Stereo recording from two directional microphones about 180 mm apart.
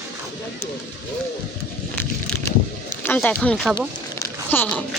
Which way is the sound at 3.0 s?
10° left (ahead or behind).